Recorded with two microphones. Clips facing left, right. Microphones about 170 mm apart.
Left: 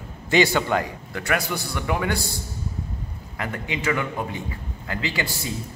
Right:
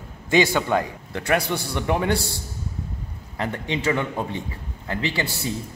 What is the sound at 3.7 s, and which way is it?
A man's voice, 30° right (ahead or behind).